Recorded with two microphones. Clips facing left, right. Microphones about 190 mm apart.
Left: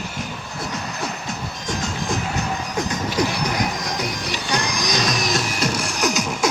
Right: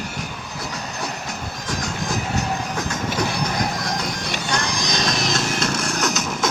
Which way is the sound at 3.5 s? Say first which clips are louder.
Even; 15° left (ahead or behind).